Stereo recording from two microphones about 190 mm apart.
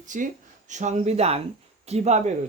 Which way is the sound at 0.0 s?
40° right (ahead or behind).